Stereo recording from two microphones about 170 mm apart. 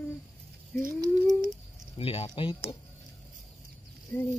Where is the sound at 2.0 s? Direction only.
35° left (ahead or behind).